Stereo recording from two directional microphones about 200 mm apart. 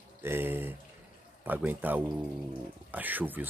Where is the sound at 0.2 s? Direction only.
10° right (ahead or behind).